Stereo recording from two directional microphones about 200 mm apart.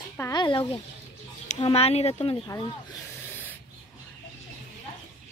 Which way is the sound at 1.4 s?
30° left (ahead or behind).